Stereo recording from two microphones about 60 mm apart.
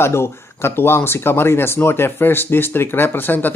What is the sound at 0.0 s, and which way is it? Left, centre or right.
Speech, left.